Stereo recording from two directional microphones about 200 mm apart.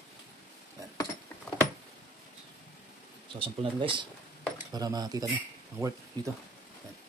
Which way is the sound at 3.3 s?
25° right (ahead or behind).